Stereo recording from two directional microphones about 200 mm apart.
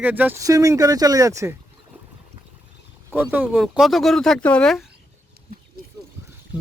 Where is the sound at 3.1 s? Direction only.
10° right (ahead or behind).